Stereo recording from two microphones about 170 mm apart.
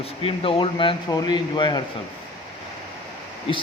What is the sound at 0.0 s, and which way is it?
A man's voice, 35° left (ahead or behind).